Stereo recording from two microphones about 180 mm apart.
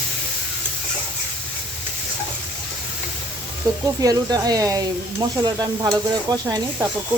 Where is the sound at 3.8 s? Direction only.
20° right (ahead or behind).